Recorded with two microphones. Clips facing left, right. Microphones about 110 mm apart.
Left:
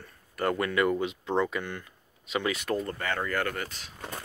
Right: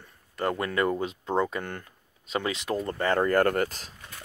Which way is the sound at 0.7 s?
35° right (ahead or behind).